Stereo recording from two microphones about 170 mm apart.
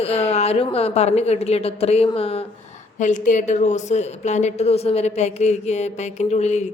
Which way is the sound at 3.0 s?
45° left (ahead or behind).